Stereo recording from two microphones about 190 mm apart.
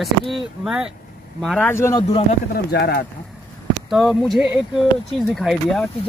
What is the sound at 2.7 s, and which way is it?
Speech, 55° left (ahead or behind).